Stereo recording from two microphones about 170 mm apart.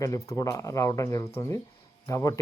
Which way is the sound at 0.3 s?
20° left (ahead or behind).